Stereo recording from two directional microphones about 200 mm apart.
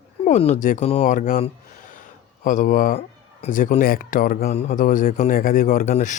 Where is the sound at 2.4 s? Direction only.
40° left (ahead or behind).